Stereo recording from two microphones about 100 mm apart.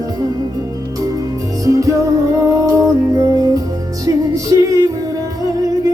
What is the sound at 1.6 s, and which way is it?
Music, 35° right (ahead or behind).